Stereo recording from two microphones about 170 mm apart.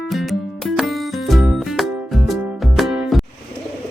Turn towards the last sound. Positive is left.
turn(degrees=0)  # may be behind; listen again after turning